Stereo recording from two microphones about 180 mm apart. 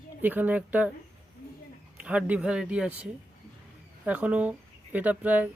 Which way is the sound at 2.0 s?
10° right (ahead or behind).